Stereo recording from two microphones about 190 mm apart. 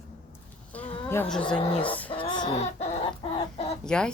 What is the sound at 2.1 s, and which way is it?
Music, 25° left (ahead or behind).